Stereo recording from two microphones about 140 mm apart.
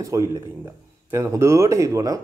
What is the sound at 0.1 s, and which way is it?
A man's voice, 20° right (ahead or behind).